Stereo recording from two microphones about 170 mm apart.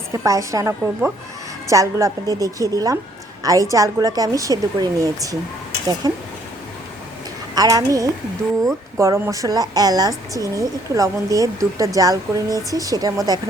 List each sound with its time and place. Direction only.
0.1 s a woman's voice: 20° right (ahead or behind)
7.5 s a woman's voice: 20° right (ahead or behind)